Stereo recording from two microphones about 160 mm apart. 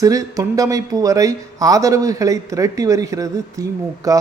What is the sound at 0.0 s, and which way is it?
Speech, 20° right (ahead or behind).